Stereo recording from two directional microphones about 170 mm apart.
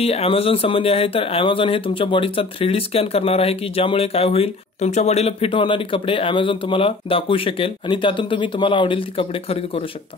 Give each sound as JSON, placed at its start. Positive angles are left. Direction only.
{"t": 0.0, "sound": "speech", "side_deg": 35}